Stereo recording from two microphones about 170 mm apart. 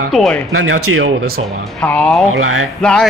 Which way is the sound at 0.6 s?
80° right.